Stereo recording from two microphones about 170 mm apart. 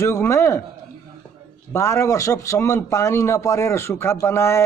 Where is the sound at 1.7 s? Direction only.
15° left (ahead or behind).